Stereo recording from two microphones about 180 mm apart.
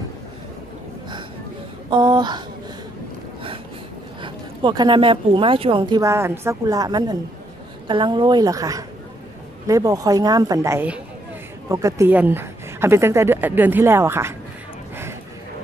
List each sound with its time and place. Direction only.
1.9 s a woman's voice: 25° right (ahead or behind)
4.2 s a woman's voice: 25° right (ahead or behind)